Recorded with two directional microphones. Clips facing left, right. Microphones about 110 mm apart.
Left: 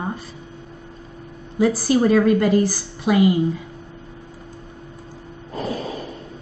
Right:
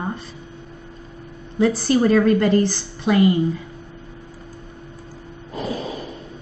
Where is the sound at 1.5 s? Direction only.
5° left (ahead or behind).